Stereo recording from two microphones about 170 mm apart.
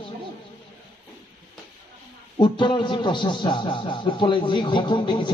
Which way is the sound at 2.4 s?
25° left (ahead or behind).